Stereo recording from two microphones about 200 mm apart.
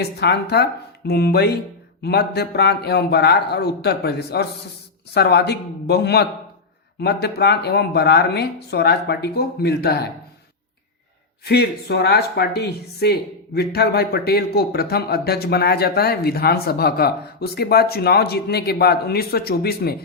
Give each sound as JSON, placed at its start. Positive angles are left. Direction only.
{"t": 0.0, "sound": "speech", "side_deg": 55}
{"t": 11.4, "sound": "speech", "side_deg": 55}